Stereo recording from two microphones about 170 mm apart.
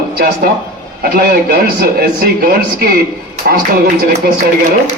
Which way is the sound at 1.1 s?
60° right (ahead or behind).